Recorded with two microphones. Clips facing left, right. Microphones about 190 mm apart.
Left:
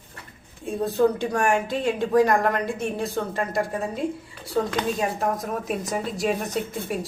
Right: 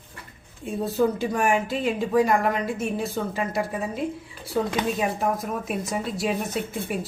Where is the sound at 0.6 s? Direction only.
Centre (ahead or behind).